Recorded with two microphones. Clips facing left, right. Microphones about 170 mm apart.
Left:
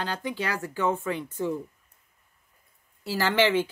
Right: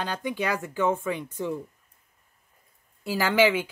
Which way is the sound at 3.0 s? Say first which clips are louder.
Right 2 dB; 15° right (ahead or behind).